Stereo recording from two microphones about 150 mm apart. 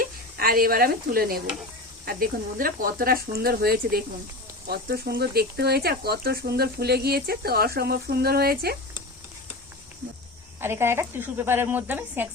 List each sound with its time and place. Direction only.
0.0 s speech: 80° right
10.6 s speech: 15° right (ahead or behind)